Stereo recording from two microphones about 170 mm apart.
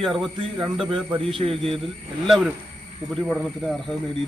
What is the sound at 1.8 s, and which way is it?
Speech, centre (ahead or behind).